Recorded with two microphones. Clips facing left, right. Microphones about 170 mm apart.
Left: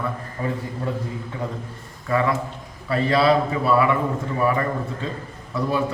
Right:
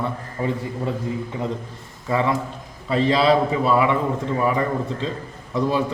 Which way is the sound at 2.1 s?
25° right (ahead or behind).